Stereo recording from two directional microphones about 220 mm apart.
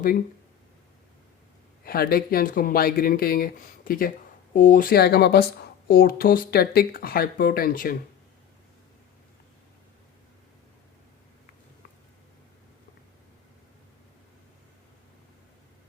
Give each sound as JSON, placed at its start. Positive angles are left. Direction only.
{"t": 1.8, "sound": "speech", "side_deg": 45}